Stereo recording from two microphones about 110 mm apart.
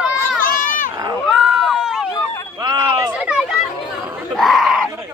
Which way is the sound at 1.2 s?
Centre (ahead or behind).